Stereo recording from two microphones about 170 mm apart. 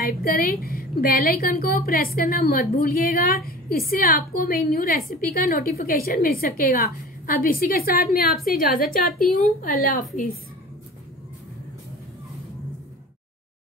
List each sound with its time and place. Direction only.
0.0 s a woman's voice: 60° left (ahead or behind)